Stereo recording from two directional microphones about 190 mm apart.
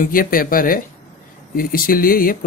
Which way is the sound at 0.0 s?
50° left (ahead or behind).